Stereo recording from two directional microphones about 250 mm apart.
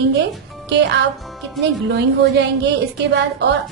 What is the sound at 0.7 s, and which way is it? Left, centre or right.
A woman's voice, right.